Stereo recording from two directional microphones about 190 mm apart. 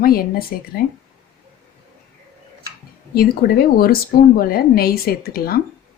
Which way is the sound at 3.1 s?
55° left (ahead or behind).